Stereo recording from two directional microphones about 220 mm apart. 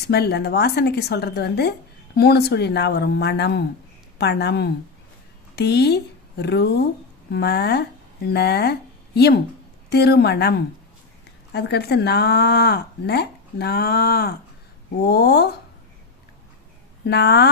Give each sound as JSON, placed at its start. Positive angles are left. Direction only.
{"t": 0.1, "sound": "speech", "side_deg": 45}
{"t": 11.5, "sound": "speech", "side_deg": 45}
{"t": 17.1, "sound": "speech", "side_deg": 50}